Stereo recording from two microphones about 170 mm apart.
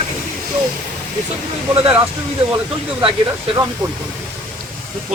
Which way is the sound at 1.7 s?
35° right (ahead or behind).